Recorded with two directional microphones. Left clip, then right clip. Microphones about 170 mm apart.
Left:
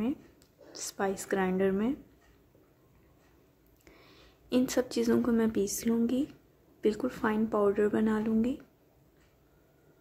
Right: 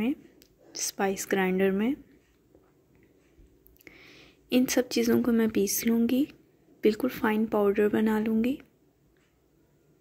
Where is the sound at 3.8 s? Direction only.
15° right (ahead or behind).